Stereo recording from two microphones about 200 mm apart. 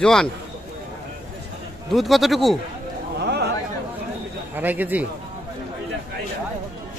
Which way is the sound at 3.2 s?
55° right (ahead or behind).